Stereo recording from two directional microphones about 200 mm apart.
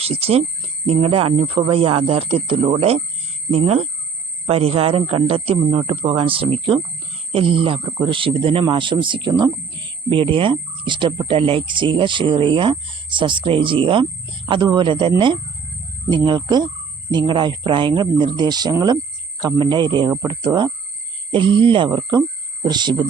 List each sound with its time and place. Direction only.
0.0 s a man's voice: 30° right (ahead or behind)